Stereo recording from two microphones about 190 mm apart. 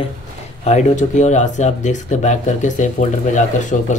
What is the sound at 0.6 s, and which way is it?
Speech, 40° left (ahead or behind).